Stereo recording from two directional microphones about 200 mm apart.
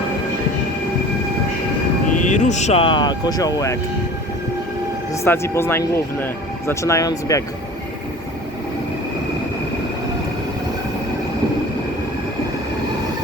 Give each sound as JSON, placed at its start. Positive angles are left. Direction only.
{"t": 2.1, "sound": "speech", "side_deg": 35}
{"t": 5.2, "sound": "speech", "side_deg": 15}